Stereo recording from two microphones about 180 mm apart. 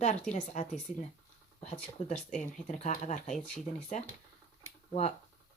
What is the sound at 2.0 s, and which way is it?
Speech, 35° left (ahead or behind).